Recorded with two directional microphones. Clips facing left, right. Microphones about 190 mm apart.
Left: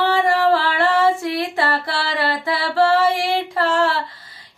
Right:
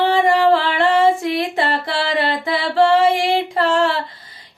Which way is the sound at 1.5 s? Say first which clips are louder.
Right 2 dB; 20° right (ahead or behind).